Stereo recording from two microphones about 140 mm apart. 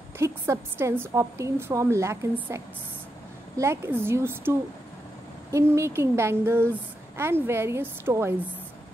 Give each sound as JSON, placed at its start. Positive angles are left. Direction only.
{"t": 0.2, "sound": "a woman's voice", "side_deg": -20}